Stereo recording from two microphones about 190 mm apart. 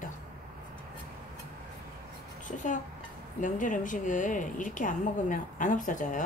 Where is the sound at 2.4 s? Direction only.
40° left (ahead or behind).